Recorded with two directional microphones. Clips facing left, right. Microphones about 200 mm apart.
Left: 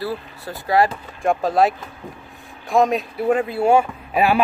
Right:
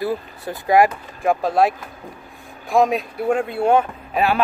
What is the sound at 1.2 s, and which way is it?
Speech, centre (ahead or behind).